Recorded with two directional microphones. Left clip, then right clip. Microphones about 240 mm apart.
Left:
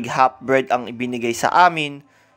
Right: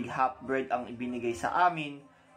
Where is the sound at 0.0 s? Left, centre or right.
Left.